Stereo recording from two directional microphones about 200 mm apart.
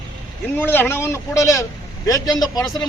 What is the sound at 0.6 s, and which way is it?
Speech, 10° left (ahead or behind).